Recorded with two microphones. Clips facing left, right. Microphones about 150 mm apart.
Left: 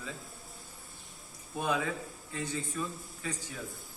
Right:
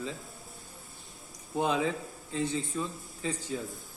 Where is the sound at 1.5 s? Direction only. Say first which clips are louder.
Right 4 dB; 25° right (ahead or behind).